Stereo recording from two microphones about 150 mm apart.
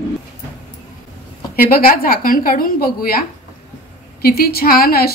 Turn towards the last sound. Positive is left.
turn(degrees=90)